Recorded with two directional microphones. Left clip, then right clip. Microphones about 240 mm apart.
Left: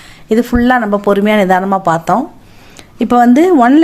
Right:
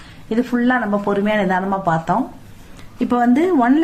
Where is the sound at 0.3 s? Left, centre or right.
Left.